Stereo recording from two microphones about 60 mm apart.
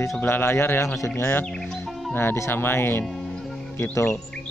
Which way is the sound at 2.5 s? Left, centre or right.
Left.